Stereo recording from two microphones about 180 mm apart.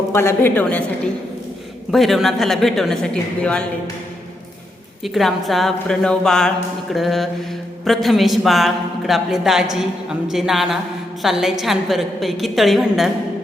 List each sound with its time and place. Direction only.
0.1 s a woman's voice: 15° left (ahead or behind)
1.9 s a woman's voice: centre (ahead or behind)
5.0 s a woman's voice: centre (ahead or behind)